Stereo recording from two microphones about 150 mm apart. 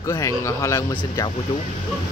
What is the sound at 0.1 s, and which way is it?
Speech, 20° left (ahead or behind).